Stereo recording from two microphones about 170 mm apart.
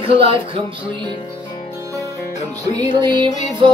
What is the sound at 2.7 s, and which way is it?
Music, 25° right (ahead or behind).